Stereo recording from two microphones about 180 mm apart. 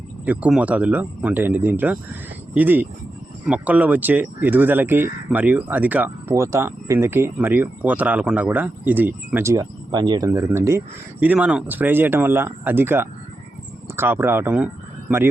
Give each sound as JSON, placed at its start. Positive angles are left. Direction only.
{"t": 0.3, "sound": "speech", "side_deg": -5}